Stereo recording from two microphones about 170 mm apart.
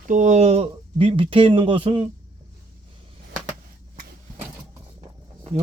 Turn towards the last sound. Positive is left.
turn(degrees=-35)  # may be behind; listen again after turning